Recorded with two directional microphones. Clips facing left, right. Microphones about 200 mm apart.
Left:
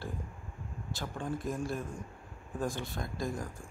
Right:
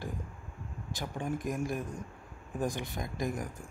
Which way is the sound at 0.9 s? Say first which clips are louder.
Right 2 dB; 15° right (ahead or behind).